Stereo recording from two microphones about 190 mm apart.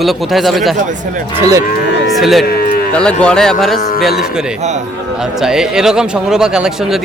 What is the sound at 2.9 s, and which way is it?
Speech, 5° left (ahead or behind).